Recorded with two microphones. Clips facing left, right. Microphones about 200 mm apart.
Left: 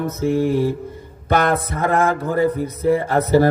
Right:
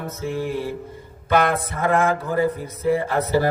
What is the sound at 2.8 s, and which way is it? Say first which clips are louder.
Music: left 3 dB; 45° left (ahead or behind).